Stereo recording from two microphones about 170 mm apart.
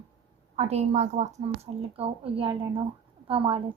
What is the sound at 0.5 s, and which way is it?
A woman's voice, 40° right (ahead or behind).